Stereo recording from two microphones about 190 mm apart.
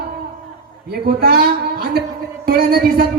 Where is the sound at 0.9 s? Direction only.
55° right (ahead or behind).